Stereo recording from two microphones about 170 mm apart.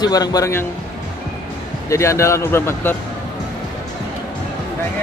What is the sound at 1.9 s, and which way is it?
A man's voice, 15° left (ahead or behind).